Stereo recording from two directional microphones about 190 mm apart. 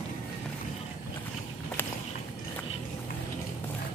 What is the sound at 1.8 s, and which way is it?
Walk, 10° left (ahead or behind).